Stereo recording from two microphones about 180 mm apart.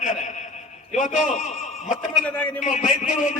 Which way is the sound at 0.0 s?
45° left (ahead or behind).